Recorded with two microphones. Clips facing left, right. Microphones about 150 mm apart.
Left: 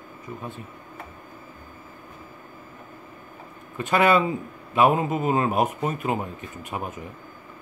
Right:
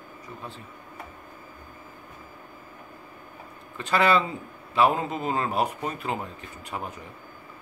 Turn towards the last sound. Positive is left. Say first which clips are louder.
# left 3 dB
turn(degrees=15)  # may be behind; listen again after turning